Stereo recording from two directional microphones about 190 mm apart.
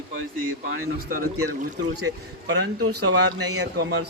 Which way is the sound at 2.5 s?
65° right (ahead or behind).